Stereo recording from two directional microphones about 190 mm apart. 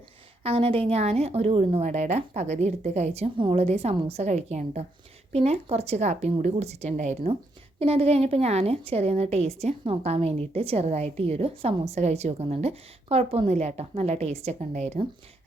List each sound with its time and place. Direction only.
0.4 s a woman's voice: 30° right (ahead or behind)